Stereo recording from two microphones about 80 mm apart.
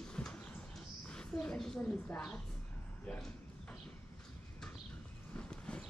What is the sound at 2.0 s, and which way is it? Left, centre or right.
Speech, centre.